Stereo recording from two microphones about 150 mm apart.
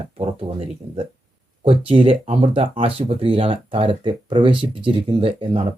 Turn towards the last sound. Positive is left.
turn(degrees=-35)  # may be behind; listen again after turning